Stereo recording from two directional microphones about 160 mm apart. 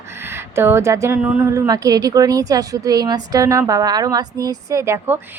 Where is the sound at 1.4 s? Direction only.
20° right (ahead or behind).